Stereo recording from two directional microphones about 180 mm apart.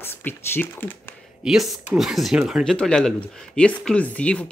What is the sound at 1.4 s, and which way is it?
Speech, centre (ahead or behind).